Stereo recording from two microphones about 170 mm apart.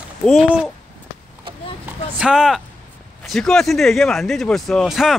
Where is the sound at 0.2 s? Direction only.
Centre (ahead or behind).